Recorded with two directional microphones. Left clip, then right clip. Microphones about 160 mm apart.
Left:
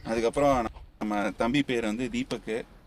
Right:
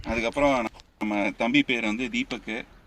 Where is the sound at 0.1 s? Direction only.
45° left (ahead or behind).